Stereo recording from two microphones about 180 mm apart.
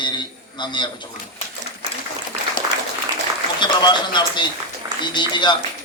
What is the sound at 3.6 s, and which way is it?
A man's voice, 25° left (ahead or behind).